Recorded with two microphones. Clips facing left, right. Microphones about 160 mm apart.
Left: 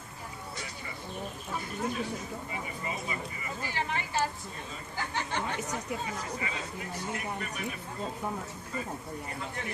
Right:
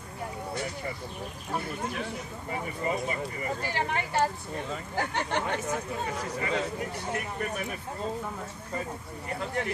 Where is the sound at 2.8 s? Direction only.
45° right (ahead or behind).